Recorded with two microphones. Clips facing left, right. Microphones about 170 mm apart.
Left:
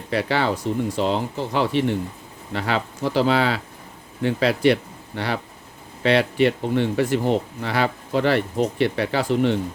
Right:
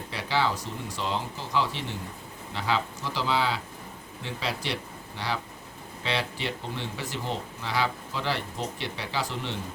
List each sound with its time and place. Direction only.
0.1 s speech: 65° left (ahead or behind)